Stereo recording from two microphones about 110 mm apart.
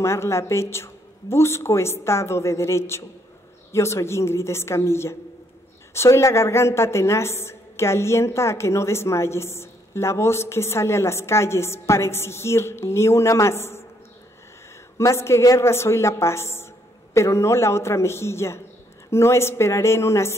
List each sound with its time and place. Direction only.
0.0 s a woman's voice: 25° left (ahead or behind)
15.0 s a woman's voice: 25° left (ahead or behind)